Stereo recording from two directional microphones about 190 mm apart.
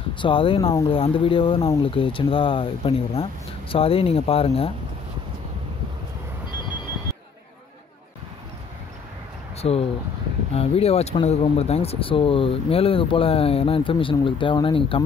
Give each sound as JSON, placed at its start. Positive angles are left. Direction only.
{"t": 0.2, "sound": "speech", "side_deg": 25}
{"t": 9.6, "sound": "speech", "side_deg": 30}